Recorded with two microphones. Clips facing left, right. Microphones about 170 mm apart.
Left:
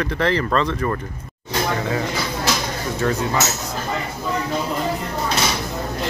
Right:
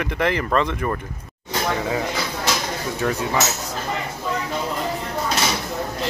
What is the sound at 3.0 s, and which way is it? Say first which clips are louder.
Speech: left 2 dB; 10° right (ahead or behind).